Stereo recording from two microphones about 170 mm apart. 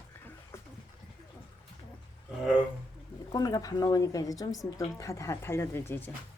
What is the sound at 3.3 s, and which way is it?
A woman's voice, 20° left (ahead or behind).